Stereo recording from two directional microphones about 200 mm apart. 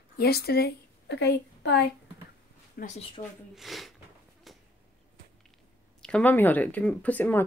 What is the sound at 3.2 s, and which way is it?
Speech, 25° left (ahead or behind).